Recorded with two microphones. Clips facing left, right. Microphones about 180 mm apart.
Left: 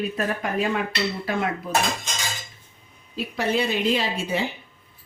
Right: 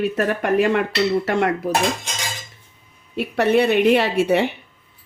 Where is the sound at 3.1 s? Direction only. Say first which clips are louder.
Right 7 dB; 65° right (ahead or behind).